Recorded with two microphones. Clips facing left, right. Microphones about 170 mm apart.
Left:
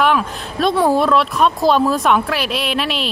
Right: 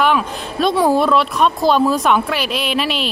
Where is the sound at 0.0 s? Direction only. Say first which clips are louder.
Even; centre (ahead or behind).